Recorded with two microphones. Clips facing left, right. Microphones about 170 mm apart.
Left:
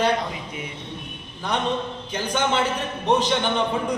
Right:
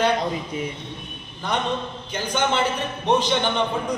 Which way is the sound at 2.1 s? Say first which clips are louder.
Even; centre (ahead or behind).